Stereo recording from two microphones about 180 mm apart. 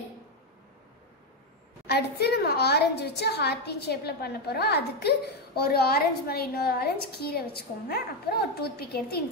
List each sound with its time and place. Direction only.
1.9 s a woman's voice: 65° left (ahead or behind)